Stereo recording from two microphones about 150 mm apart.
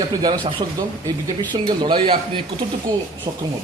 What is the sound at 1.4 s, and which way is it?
A man's voice, 30° right (ahead or behind).